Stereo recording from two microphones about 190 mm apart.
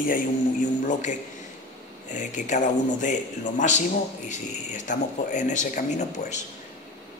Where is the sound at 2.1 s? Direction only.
40° left (ahead or behind).